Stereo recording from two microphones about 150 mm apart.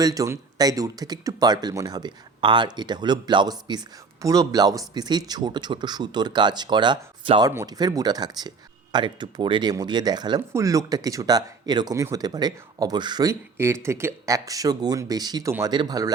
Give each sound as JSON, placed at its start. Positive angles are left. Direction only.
{"t": 0.0, "sound": "speech", "side_deg": -25}